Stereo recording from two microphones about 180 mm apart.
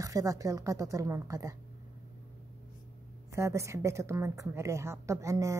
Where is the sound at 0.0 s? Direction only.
20° right (ahead or behind).